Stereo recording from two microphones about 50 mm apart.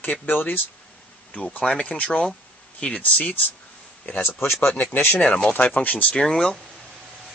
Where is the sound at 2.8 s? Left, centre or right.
Left.